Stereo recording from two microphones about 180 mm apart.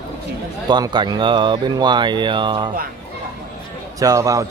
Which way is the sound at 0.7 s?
25° right (ahead or behind).